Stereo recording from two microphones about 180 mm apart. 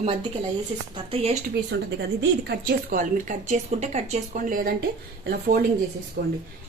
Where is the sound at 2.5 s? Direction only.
50° right (ahead or behind).